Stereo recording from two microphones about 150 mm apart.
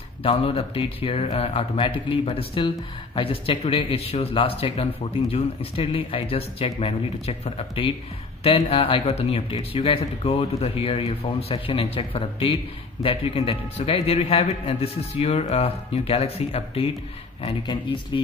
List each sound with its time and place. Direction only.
0.2 s a man's voice: 40° left (ahead or behind)